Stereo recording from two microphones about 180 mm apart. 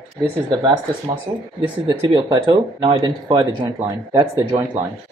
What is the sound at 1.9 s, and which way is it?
Speech, 25° right (ahead or behind).